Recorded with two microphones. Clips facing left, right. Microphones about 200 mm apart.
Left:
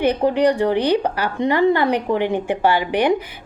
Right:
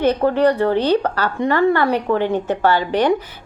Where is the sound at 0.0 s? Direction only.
15° left (ahead or behind).